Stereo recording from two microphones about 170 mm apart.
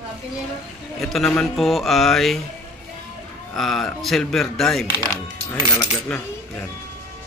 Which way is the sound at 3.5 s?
Centre (ahead or behind).